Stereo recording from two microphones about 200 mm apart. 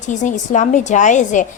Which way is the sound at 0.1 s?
40° left (ahead or behind).